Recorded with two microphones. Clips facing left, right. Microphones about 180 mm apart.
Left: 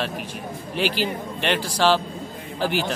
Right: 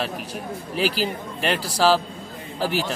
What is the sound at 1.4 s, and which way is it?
Speech, 5° right (ahead or behind).